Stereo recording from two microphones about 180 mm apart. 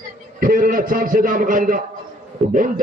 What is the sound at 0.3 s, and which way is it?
A man's voice, 50° right (ahead or behind).